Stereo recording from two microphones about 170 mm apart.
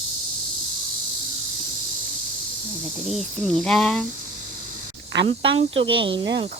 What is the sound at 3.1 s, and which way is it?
Speech, centre (ahead or behind).